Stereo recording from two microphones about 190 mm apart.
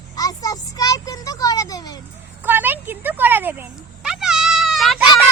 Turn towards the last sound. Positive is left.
turn(degrees=0)  # may be behind; listen again after turning